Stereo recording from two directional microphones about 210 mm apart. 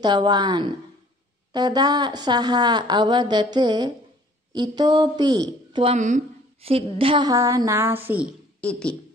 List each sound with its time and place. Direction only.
0.0 s speech: 20° right (ahead or behind)
5.9 s a woman's voice: 35° right (ahead or behind); by 8.3 s 10° right (ahead or behind)
8.5 s speech: 5° left (ahead or behind)